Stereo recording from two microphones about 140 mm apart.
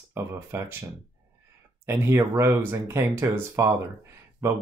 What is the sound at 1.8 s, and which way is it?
Speech, 15° right (ahead or behind).